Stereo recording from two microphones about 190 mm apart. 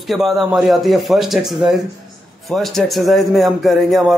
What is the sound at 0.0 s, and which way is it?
A man's voice, centre (ahead or behind).